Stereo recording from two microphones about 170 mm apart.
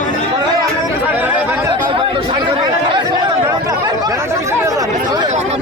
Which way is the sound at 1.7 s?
30° right (ahead or behind).